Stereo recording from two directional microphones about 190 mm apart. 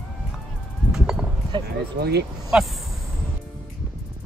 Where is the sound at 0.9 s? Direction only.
5° right (ahead or behind).